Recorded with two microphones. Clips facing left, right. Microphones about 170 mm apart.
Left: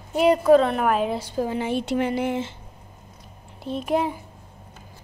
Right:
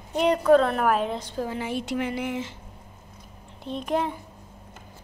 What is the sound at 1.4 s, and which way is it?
A woman's voice, 25° left (ahead or behind).